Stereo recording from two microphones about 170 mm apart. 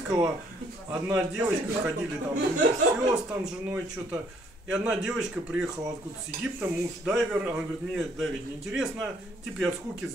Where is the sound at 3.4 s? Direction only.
10° right (ahead or behind).